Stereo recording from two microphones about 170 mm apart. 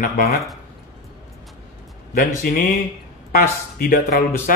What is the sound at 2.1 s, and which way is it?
Speech, 55° left (ahead or behind).